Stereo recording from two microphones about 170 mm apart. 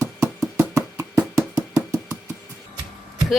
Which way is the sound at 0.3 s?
20° right (ahead or behind).